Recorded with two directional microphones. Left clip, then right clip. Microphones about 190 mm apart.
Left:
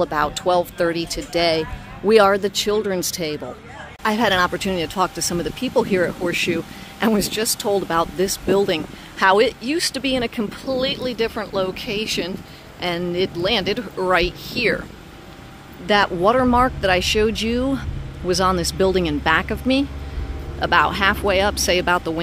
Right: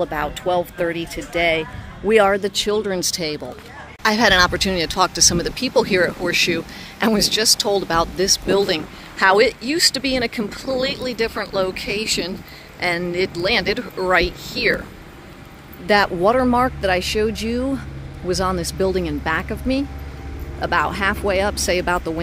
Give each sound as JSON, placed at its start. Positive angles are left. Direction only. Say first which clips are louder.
{"t": 0.2, "sound": "speech", "louder": "left 2 dB", "side_deg": 25}
{"t": 2.2, "sound": "speech", "louder": "left 1 dB", "side_deg": 5}
{"t": 13.9, "sound": "speech", "louder": "right 1 dB", "side_deg": 5}
{"t": 15.9, "sound": "speech", "louder": "right 1 dB", "side_deg": -5}